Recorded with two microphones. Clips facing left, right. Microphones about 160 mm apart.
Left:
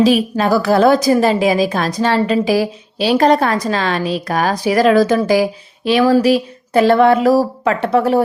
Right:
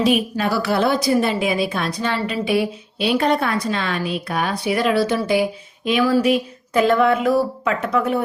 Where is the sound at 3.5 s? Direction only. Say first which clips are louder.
Left 5 dB; 90° left.